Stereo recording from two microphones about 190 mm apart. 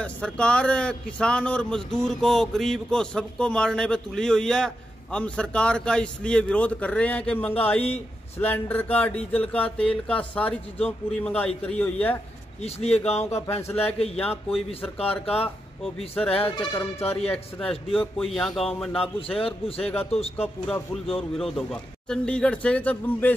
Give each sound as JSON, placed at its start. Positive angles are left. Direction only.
{"t": 0.0, "sound": "a man's voice", "side_deg": 5}
{"t": 12.6, "sound": "speech", "side_deg": 35}
{"t": 13.6, "sound": "a man's voice", "side_deg": 10}
{"t": 15.0, "sound": "speech", "side_deg": 30}
{"t": 16.2, "sound": "speech", "side_deg": 5}
{"t": 17.0, "sound": "speech", "side_deg": 35}
{"t": 17.3, "sound": "a man's voice", "side_deg": 5}
{"t": 19.1, "sound": "a man's voice", "side_deg": 30}
{"t": 20.6, "sound": "a man's voice", "side_deg": 5}